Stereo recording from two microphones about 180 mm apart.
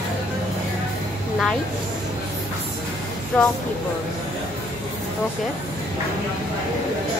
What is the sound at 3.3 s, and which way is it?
Speech, 5° left (ahead or behind).